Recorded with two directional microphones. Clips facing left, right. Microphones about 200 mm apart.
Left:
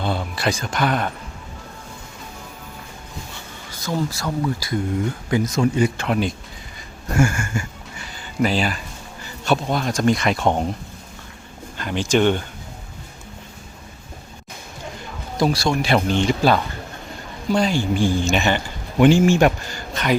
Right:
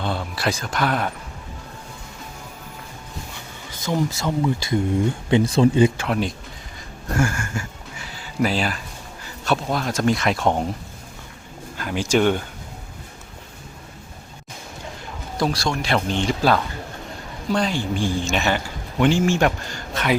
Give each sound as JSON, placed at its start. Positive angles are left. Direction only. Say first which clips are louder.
{"t": 0.0, "sound": "speech", "louder": "left 2 dB", "side_deg": 0}
{"t": 3.8, "sound": "speech", "louder": "right 1 dB", "side_deg": -20}
{"t": 6.0, "sound": "speech", "louder": "left 2 dB", "side_deg": 0}
{"t": 7.3, "sound": "a sound", "louder": "left 2 dB", "side_deg": 0}
{"t": 9.2, "sound": "speech", "louder": "left 2 dB", "side_deg": 0}
{"t": 11.8, "sound": "speech", "louder": "left 1 dB", "side_deg": -5}
{"t": 15.4, "sound": "speech", "louder": "left 3 dB", "side_deg": 5}
{"t": 18.9, "sound": "speech", "louder": "left 4 dB", "side_deg": 10}
{"t": 19.9, "sound": "speech", "louder": "left 1 dB", "side_deg": 0}